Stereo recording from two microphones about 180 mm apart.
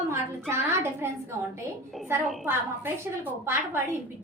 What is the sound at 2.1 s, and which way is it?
A woman's voice, 15° right (ahead or behind).